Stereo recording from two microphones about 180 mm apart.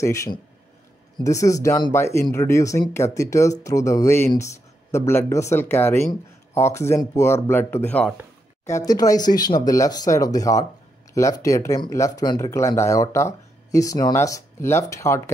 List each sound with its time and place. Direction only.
0.0 s speech: 15° left (ahead or behind)